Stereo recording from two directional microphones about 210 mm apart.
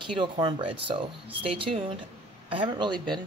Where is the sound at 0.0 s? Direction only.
25° right (ahead or behind).